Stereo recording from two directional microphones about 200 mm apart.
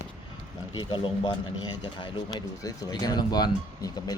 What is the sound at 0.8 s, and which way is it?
Speech, 25° left (ahead or behind).